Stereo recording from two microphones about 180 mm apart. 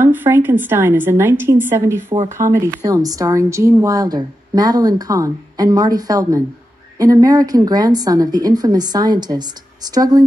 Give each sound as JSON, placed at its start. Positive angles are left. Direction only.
{"t": 0.0, "sound": "a woman's voice", "side_deg": -10}